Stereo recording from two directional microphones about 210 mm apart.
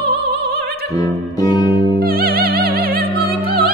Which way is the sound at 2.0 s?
45° right (ahead or behind).